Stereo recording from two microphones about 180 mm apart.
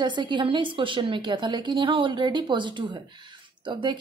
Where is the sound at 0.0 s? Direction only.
25° right (ahead or behind).